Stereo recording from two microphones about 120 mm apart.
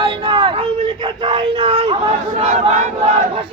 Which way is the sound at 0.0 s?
45° right (ahead or behind).